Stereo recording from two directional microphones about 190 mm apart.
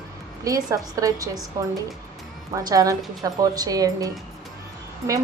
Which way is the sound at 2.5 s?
20° right (ahead or behind).